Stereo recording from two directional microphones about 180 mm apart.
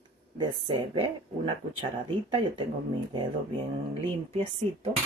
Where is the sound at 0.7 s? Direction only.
30° right (ahead or behind).